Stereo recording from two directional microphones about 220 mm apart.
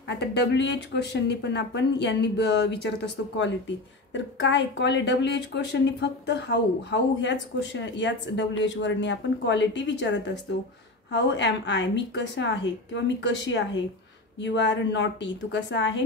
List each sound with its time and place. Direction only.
0.2 s a woman's voice: 50° left (ahead or behind)